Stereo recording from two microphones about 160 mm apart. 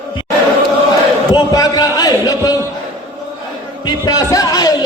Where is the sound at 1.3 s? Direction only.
25° left (ahead or behind).